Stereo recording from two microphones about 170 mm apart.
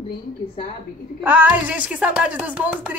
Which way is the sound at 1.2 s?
10° right (ahead or behind).